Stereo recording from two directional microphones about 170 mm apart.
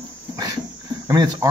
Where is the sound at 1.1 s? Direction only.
25° right (ahead or behind).